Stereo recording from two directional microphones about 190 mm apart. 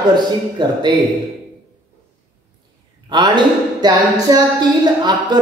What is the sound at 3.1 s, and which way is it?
Speech, 25° right (ahead or behind).